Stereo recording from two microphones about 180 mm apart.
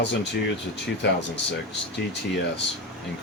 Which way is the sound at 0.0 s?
75° left (ahead or behind).